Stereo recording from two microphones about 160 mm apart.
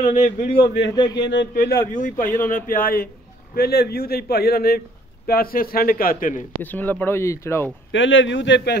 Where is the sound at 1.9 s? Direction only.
55° left (ahead or behind).